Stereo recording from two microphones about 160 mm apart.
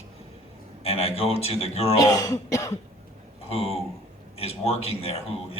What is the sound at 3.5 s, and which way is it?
A man's voice, 40° left (ahead or behind).